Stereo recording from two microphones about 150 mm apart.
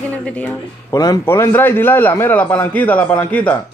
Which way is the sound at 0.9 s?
25° left (ahead or behind).